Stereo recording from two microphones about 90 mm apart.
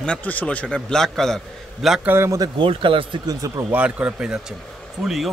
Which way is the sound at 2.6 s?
75° right (ahead or behind).